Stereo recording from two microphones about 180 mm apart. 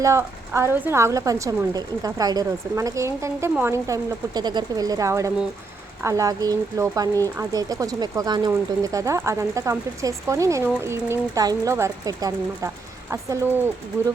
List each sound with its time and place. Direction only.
0.0 s speech: 15° right (ahead or behind)